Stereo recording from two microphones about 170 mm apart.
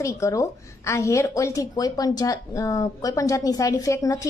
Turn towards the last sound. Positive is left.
turn(degrees=20)  # may be behind; listen again after turning